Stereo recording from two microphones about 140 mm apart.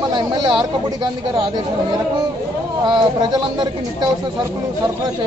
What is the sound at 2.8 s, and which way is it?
Speech, 35° right (ahead or behind).